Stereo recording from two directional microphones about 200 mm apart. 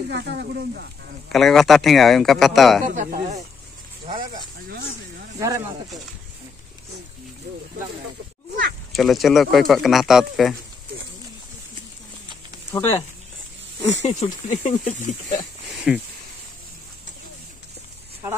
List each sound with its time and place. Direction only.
0.1 s speech: 55° right (ahead or behind)
1.3 s speech: centre (ahead or behind)
2.8 s speech: 40° right (ahead or behind)
5.4 s speech: 15° right (ahead or behind)
8.9 s speech: centre (ahead or behind)
12.7 s speech: 10° left (ahead or behind)
14.0 s speech: 35° left (ahead or behind)
15.7 s a sound: 5° right (ahead or behind)